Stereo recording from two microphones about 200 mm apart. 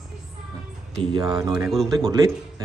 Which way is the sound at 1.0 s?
20° right (ahead or behind).